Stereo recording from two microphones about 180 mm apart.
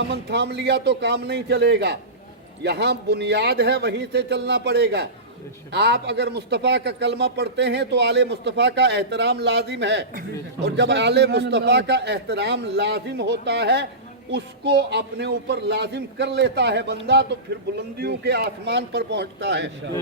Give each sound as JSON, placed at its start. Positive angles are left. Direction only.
{"t": 0.1, "sound": "a man's voice", "side_deg": -70}